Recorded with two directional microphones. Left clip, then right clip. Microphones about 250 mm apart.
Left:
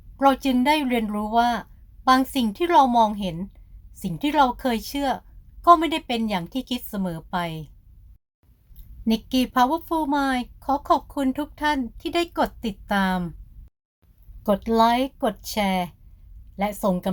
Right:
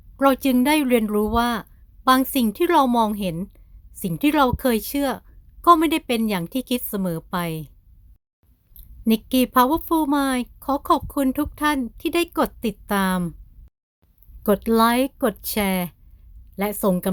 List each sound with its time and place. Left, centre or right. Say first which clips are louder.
0.2 s a woman's voice: right 1 dB; right
8.7 s a woman's voice: right 3 dB; right
14.4 s a woman's voice: right 1 dB; right